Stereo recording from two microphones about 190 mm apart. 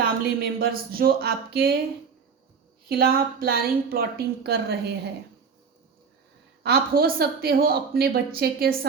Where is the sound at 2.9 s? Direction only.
50° right (ahead or behind).